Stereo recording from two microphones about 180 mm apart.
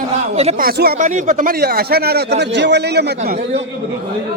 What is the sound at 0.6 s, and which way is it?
Speech, 60° right (ahead or behind).